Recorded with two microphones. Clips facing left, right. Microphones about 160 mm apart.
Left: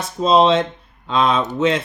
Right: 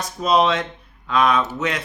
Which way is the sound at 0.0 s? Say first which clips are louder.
Left 4 dB; 25° left (ahead or behind).